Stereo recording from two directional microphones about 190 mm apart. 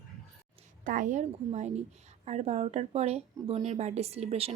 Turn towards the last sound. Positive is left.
turn(degrees=-35)  # may be behind; listen again after turning